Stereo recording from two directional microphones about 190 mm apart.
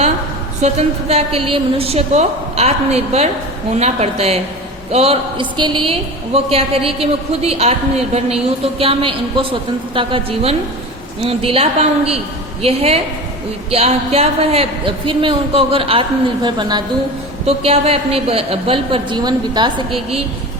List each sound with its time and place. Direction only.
0.6 s a woman's voice: 35° right (ahead or behind)